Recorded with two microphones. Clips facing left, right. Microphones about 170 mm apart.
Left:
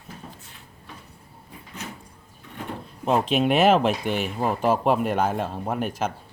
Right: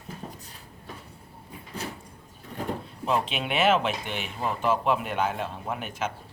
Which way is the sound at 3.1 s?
40° left (ahead or behind).